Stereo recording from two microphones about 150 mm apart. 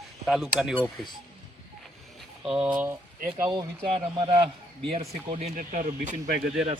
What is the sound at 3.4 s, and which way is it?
Speech, 30° right (ahead or behind).